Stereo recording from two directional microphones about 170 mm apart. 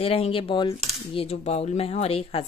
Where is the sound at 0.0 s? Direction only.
35° left (ahead or behind).